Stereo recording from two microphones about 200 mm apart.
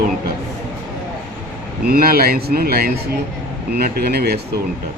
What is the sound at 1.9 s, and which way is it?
Speech, 50° right (ahead or behind).